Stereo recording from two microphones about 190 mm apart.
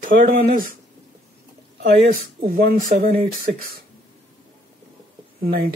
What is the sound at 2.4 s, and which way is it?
Speech, 50° right (ahead or behind).